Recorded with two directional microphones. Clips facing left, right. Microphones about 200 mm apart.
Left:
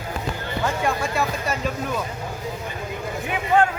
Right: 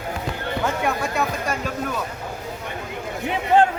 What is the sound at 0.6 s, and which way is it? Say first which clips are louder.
Speech: even; centre (ahead or behind).